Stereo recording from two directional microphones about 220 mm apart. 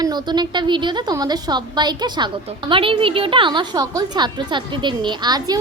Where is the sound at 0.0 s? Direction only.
20° right (ahead or behind).